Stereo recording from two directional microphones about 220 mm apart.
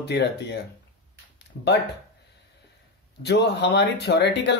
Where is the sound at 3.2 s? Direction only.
50° left (ahead or behind).